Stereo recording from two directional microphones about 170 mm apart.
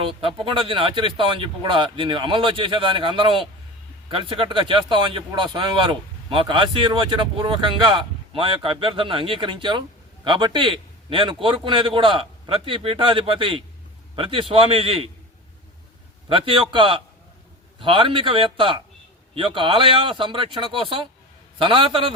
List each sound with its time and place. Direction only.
0.0 s a man's voice: 30° right (ahead or behind)
16.3 s speech: 30° right (ahead or behind)